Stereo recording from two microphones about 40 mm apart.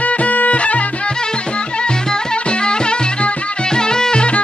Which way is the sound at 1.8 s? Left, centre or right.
Left.